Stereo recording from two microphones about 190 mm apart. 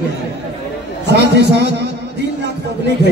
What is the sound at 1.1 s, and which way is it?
Speech, 60° right (ahead or behind).